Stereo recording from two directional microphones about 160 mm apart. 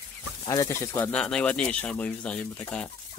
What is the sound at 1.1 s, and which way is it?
Speech, 5° left (ahead or behind).